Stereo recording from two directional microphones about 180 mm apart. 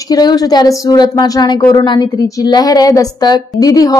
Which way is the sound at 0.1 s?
20° left (ahead or behind).